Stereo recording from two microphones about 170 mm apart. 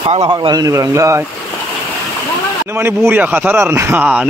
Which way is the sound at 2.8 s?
15° right (ahead or behind).